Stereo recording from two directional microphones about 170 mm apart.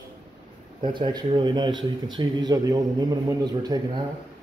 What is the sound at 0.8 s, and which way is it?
A man's voice, 25° right (ahead or behind).